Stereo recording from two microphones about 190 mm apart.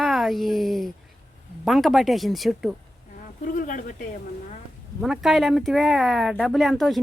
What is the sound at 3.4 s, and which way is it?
Speech, 45° left (ahead or behind).